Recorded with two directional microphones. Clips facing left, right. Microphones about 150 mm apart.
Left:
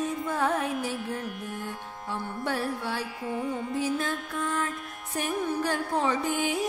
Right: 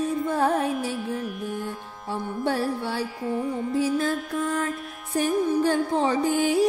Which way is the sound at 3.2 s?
5° left (ahead or behind).